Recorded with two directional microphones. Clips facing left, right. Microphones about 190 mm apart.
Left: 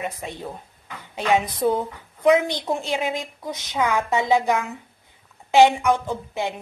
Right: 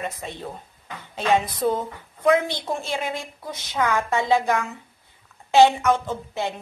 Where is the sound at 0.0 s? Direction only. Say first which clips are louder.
Left 1 dB; 15° left (ahead or behind).